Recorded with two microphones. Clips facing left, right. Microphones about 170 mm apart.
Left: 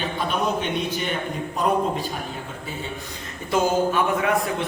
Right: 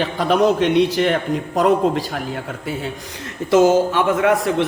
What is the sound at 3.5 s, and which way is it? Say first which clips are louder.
Speech: right 7 dB; 90° right.